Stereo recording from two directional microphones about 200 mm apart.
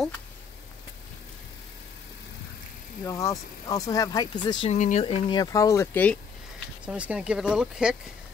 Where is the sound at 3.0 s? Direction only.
15° left (ahead or behind).